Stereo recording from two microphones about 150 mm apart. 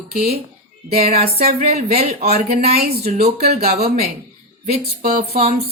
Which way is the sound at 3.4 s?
90° right.